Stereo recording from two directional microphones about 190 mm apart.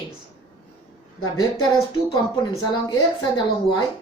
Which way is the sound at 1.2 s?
20° left (ahead or behind).